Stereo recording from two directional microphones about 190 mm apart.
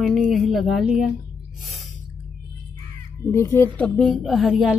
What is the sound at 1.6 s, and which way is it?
Gasp, centre (ahead or behind).